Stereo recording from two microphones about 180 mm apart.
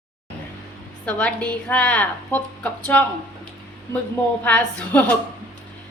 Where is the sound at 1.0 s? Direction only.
5° left (ahead or behind).